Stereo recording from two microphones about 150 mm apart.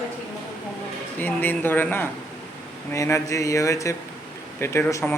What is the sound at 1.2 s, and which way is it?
Speech, 10° left (ahead or behind).